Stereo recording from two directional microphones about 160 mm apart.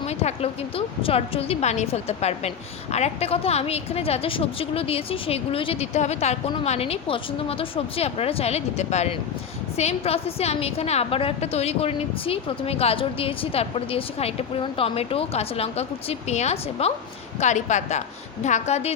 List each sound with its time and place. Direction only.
0.0 s a woman's voice: 40° left (ahead or behind)